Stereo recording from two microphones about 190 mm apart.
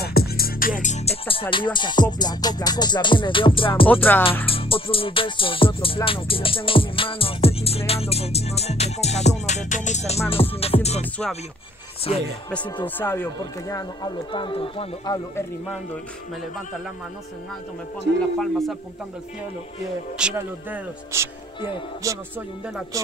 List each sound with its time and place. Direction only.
0.0 s music: 55° left (ahead or behind); by 1.4 s 30° left (ahead or behind)
1.5 s speech: 25° left (ahead or behind)
3.8 s music: 10° left (ahead or behind)
4.5 s speech: 30° left (ahead or behind)
6.0 s music: 30° left (ahead or behind)
12.1 s music: 35° left (ahead or behind)
12.8 s speech: 10° left (ahead or behind); by 15.1 s 30° left (ahead or behind)
18.4 s speech: centre (ahead or behind)
20.2 s speech: 5° right (ahead or behind)